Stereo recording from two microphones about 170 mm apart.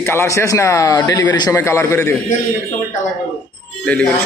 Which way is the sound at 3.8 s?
10° left (ahead or behind).